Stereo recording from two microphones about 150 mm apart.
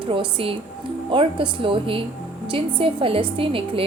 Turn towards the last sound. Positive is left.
turn(degrees=-35)  # may be behind; listen again after turning